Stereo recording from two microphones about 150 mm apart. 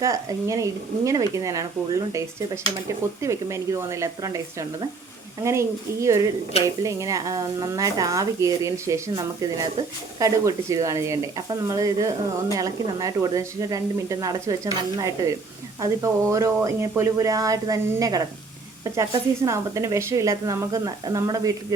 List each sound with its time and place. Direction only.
0.0 s speech: 20° right (ahead or behind)
5.4 s speech: 20° right (ahead or behind)
19.5 s speech: 20° right (ahead or behind)